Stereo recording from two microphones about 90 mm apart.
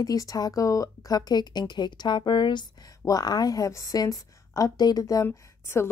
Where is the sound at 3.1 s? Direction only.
45° left (ahead or behind).